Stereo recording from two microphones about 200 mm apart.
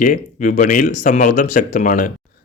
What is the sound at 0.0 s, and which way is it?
Speech, 40° left (ahead or behind).